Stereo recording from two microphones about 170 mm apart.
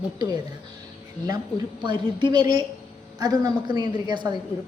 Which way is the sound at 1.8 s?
25° right (ahead or behind).